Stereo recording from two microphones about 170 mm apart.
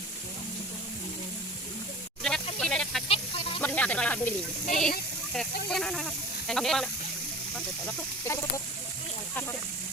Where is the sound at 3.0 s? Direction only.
35° left (ahead or behind).